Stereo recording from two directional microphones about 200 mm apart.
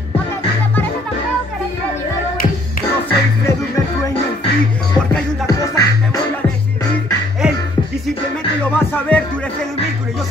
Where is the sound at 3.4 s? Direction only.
15° left (ahead or behind).